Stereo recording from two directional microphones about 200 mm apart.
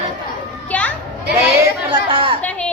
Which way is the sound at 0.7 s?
10° left (ahead or behind).